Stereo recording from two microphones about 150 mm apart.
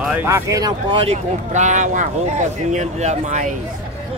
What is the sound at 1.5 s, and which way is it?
Speech, 55° right (ahead or behind).